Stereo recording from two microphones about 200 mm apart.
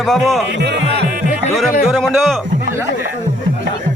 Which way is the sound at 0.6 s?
55° right (ahead or behind).